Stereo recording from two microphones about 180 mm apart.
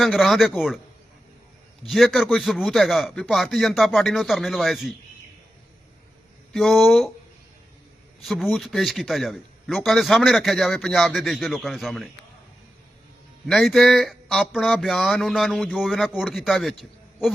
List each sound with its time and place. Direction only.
0.0 s a man's voice: centre (ahead or behind)
1.9 s a man's voice: centre (ahead or behind)
6.5 s a man's voice: centre (ahead or behind)
8.2 s a man's voice: centre (ahead or behind)
13.5 s a man's voice: centre (ahead or behind)